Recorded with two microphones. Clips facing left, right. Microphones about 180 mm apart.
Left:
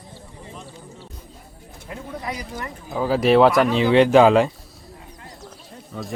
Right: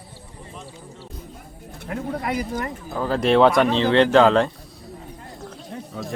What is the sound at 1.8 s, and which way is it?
Bird, 60° right (ahead or behind).